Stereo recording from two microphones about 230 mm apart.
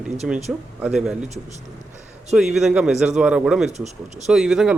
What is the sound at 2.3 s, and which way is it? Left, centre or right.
Speech, centre.